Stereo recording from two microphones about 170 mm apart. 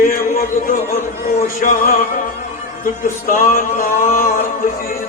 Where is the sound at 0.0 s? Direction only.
55° left (ahead or behind).